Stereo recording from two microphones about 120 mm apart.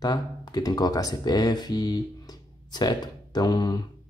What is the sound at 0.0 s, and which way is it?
Speech, 35° left (ahead or behind).